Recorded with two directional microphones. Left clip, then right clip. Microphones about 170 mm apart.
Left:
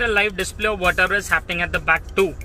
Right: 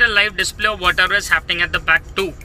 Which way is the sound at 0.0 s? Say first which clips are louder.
Right 5 dB; 50° left (ahead or behind).